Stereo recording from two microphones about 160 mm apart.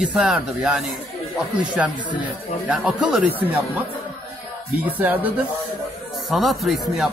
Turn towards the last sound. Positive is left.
turn(degrees=0)  # may be behind; listen again after turning